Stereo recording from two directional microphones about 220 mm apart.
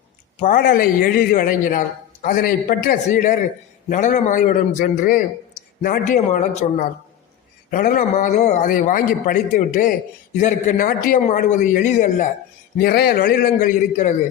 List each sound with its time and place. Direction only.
0.3 s a man's voice: 35° left (ahead or behind)
12.8 s a man's voice: 45° left (ahead or behind)